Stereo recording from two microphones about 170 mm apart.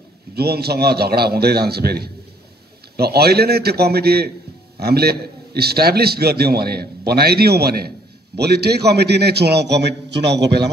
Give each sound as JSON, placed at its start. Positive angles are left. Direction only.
{"t": 0.3, "sound": "a man's voice", "side_deg": -70}